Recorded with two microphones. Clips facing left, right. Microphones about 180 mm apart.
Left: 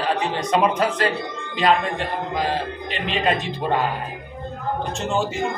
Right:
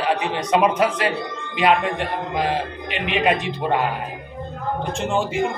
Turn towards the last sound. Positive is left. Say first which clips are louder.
# right 1 dB
turn(degrees=-15)  # may be behind; listen again after turning